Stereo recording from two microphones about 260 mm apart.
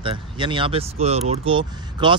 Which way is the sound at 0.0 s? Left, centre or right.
Centre.